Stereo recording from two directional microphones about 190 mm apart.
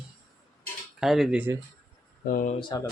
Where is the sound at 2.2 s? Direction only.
45° left (ahead or behind).